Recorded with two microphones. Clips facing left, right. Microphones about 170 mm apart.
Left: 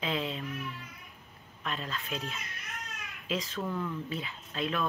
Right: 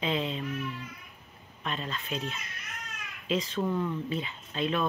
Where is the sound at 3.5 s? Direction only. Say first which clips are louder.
Right 5 dB; 20° right (ahead or behind).